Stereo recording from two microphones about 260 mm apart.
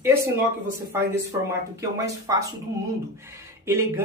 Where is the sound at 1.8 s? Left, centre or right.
Centre.